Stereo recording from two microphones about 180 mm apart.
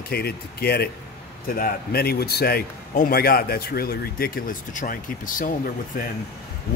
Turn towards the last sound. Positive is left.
turn(degrees=50)  # may be behind; listen again after turning